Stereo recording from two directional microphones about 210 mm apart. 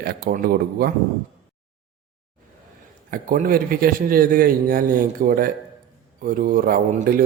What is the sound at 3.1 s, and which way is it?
A man's voice, 40° right (ahead or behind).